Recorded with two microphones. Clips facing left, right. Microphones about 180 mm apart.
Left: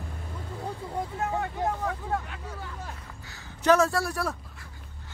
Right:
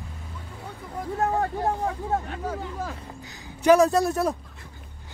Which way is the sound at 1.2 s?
35° right (ahead or behind).